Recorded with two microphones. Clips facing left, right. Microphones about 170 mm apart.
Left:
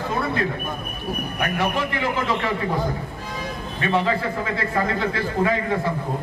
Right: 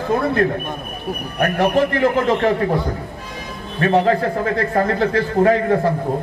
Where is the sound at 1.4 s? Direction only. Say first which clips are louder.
Right 8 dB; 50° right (ahead or behind).